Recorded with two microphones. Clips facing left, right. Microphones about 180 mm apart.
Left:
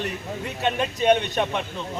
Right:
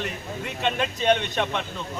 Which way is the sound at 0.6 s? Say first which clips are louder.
Left 2 dB; 10° left (ahead or behind).